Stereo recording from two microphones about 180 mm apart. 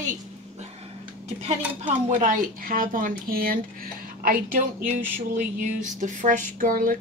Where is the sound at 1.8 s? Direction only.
40° right (ahead or behind).